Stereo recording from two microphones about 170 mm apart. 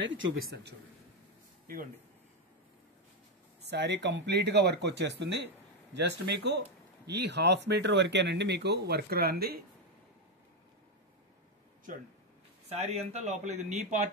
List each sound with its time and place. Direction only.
0.0 s speech: 90° right
3.6 s speech: 90° right; by 9.6 s 65° right (ahead or behind)
12.6 s speech: 40° right (ahead or behind)